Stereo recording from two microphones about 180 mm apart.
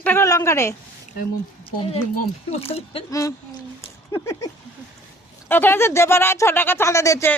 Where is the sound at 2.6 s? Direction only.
30° left (ahead or behind).